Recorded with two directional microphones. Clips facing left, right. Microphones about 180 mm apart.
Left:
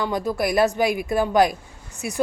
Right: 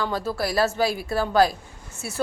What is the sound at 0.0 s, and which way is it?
A woman's voice, 15° left (ahead or behind).